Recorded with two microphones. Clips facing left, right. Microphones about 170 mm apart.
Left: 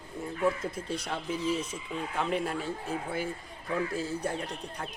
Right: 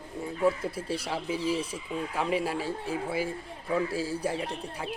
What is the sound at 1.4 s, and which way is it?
Speech, 30° right (ahead or behind).